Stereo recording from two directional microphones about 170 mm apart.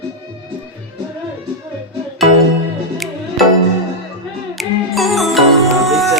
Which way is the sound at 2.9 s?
Centre (ahead or behind).